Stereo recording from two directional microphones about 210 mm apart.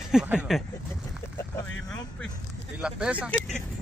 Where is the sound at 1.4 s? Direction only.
15° left (ahead or behind).